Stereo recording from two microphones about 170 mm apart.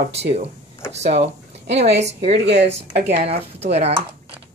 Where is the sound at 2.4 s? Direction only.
85° right.